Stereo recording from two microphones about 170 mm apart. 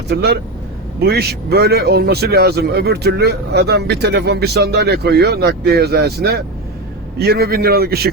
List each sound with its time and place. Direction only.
0.1 s a man's voice: 70° right (ahead or behind)